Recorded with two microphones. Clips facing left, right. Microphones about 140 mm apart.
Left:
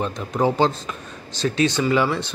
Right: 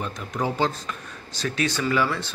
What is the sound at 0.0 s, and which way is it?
A man's voice, 30° left (ahead or behind).